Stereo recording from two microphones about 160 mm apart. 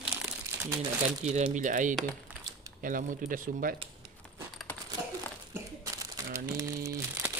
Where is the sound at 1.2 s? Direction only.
45° right (ahead or behind).